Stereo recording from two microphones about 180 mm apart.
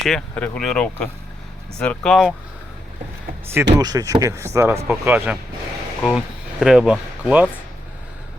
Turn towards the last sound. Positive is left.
turn(degrees=-5)  # may be behind; listen again after turning